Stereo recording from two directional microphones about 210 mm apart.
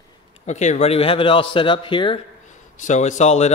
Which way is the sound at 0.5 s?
35° left (ahead or behind).